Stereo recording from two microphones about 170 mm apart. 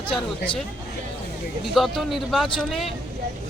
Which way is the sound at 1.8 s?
Centre (ahead or behind).